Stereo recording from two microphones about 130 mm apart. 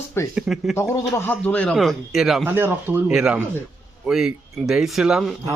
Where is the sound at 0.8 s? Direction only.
20° left (ahead or behind).